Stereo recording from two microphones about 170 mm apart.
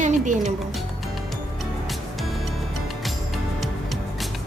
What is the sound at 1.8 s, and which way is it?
Music, centre (ahead or behind).